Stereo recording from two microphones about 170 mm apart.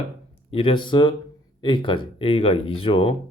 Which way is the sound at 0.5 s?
30° left (ahead or behind).